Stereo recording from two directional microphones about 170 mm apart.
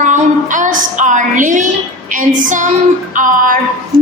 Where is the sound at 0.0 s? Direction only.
50° right (ahead or behind).